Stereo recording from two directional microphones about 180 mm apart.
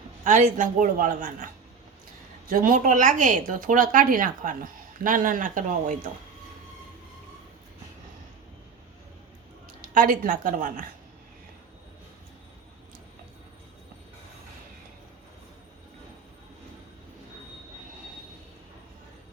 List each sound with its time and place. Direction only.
0.3 s speech: 45° right (ahead or behind)
2.5 s speech: 50° right (ahead or behind)
9.8 s speech: 50° right (ahead or behind)